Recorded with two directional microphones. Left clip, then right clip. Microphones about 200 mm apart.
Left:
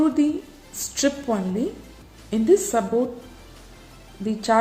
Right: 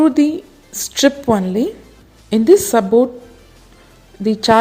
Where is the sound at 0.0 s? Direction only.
45° right (ahead or behind).